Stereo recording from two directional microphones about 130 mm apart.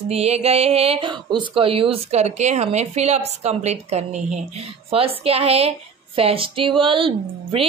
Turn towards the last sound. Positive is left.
turn(degrees=-45)  # may be behind; listen again after turning